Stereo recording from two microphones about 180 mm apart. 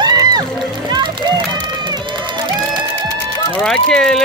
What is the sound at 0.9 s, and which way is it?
Run, 25° right (ahead or behind).